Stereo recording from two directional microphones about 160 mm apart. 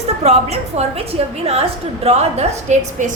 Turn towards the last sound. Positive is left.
turn(degrees=-45)  # may be behind; listen again after turning